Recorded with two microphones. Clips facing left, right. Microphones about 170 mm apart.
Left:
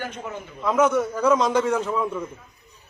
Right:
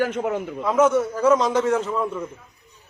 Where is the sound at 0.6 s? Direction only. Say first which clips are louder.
Right 1 dB; 5° right (ahead or behind).